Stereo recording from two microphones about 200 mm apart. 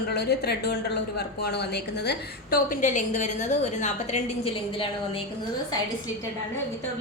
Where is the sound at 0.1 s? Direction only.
55° left (ahead or behind); by 5.2 s 30° left (ahead or behind).